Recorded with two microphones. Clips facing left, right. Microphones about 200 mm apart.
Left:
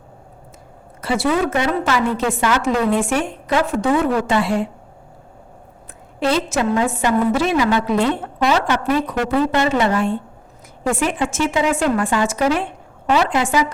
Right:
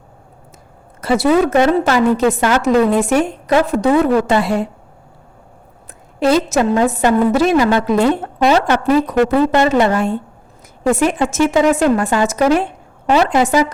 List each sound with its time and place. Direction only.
1.0 s a woman's voice: 40° right (ahead or behind)
6.1 s a woman's voice: 40° right (ahead or behind)
8.4 s a woman's voice: 35° right (ahead or behind)